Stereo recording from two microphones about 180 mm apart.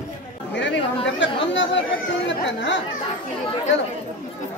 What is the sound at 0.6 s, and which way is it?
Chatter, 90° left.